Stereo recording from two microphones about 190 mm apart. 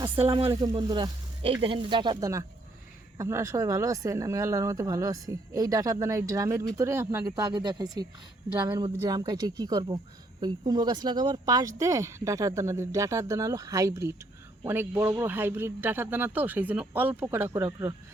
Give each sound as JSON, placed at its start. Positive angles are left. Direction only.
{"t": 0.0, "sound": "speech", "side_deg": -30}